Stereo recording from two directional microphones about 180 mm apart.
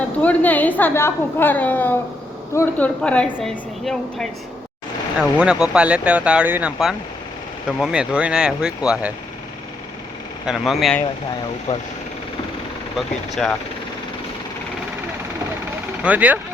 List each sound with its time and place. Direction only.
0.2 s a woman's voice: 10° left (ahead or behind)
5.4 s speech: 5° right (ahead or behind)
10.4 s speech: centre (ahead or behind)
11.7 s speech: 40° left (ahead or behind)
13.0 s speech: centre (ahead or behind)
16.0 s speech: 10° right (ahead or behind)